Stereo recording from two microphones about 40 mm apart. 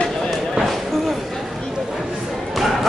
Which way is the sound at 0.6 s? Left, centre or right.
Centre.